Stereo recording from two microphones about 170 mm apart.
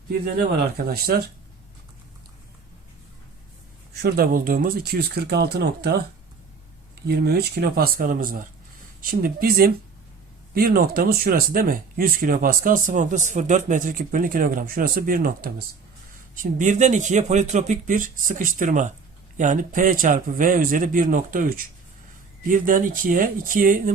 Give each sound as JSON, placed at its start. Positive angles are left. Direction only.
{"t": 0.9, "sound": "speech", "side_deg": -65}
{"t": 4.0, "sound": "speech", "side_deg": -60}
{"t": 7.1, "sound": "speech", "side_deg": -70}